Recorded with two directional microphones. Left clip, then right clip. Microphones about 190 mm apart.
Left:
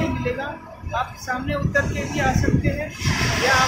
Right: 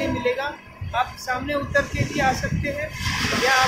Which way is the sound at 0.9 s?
15° right (ahead or behind).